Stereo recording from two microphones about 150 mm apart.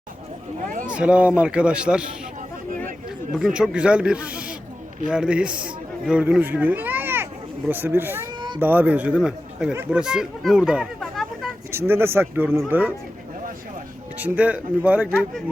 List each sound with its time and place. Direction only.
0.9 s speech: 5° right (ahead or behind)
3.3 s a man's voice: 5° right (ahead or behind)
8.4 s cat: 30° right (ahead or behind)
8.6 s speech: 10° right (ahead or behind)
11.7 s speech: 15° right (ahead or behind)
14.2 s speech: 10° right (ahead or behind)